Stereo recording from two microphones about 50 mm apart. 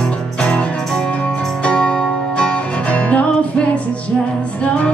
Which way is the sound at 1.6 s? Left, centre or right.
Left.